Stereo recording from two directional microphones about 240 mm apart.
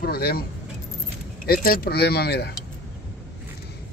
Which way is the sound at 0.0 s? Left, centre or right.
Left.